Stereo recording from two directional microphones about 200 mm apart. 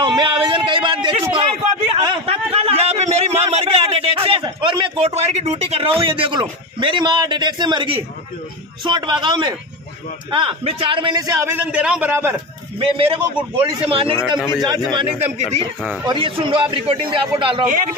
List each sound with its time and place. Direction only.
0.0 s a sound: 20° right (ahead or behind)
6.4 s a man's voice: 25° right (ahead or behind)
12.7 s a man's voice: 25° right (ahead or behind)
15.8 s speech: 5° right (ahead or behind)
16.1 s a man's voice: 25° right (ahead or behind)